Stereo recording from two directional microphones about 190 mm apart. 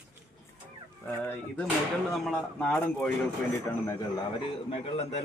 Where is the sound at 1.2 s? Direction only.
10° left (ahead or behind).